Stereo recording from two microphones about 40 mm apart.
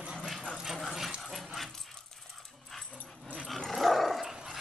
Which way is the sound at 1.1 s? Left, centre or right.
Centre.